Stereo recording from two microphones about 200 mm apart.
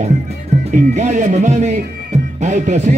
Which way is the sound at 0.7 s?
35° right (ahead or behind).